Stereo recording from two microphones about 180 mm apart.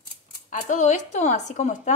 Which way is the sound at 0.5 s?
45° left (ahead or behind).